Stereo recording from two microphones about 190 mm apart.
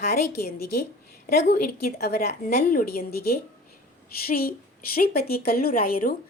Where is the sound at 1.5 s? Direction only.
55° left (ahead or behind).